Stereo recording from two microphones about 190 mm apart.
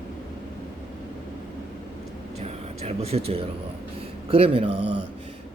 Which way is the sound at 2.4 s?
35° right (ahead or behind).